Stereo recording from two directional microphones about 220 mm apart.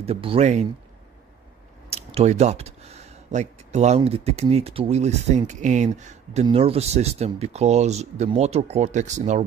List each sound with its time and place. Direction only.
0.0 s speech: 25° right (ahead or behind)
1.9 s speech: 30° right (ahead or behind)